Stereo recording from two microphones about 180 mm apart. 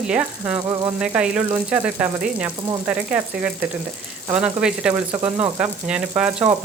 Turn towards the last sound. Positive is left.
turn(degrees=-5)  # may be behind; listen again after turning